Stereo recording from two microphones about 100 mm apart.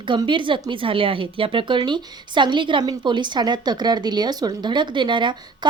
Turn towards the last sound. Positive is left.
turn(degrees=-50)  # may be behind; listen again after turning